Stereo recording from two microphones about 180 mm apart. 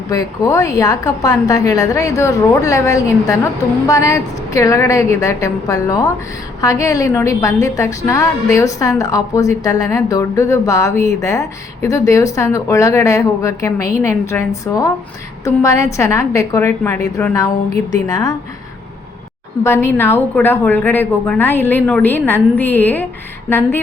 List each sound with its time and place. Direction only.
0.1 s a woman's voice: 20° left (ahead or behind)
19.6 s a woman's voice: 15° left (ahead or behind)